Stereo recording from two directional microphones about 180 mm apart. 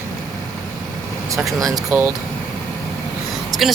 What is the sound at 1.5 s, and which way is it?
Speech, 20° right (ahead or behind).